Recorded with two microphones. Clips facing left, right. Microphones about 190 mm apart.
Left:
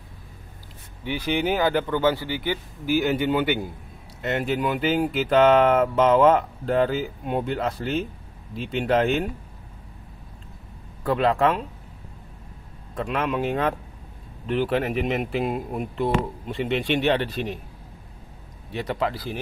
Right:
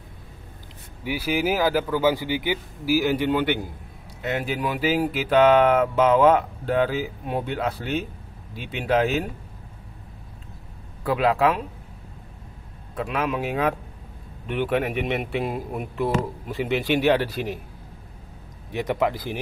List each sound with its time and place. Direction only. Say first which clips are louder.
1.0 s speech: even; 5° right (ahead or behind)
11.1 s speech: even; 5° right (ahead or behind)
12.9 s speech: even; 5° right (ahead or behind)
18.7 s speech: right 3 dB; 15° right (ahead or behind)